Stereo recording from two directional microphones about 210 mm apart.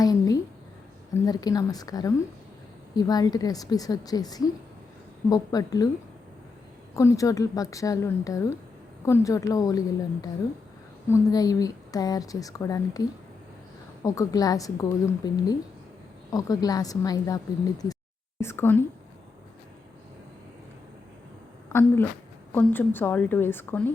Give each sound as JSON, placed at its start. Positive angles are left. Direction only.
{"t": 0.0, "sound": "a sound", "side_deg": 15}
{"t": 1.1, "sound": "a woman's voice", "side_deg": 15}
{"t": 6.9, "sound": "a woman's voice", "side_deg": 15}
{"t": 21.7, "sound": "a woman's voice", "side_deg": 10}